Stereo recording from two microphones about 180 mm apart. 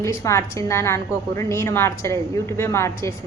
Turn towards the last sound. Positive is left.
turn(degrees=15)  # may be behind; listen again after turning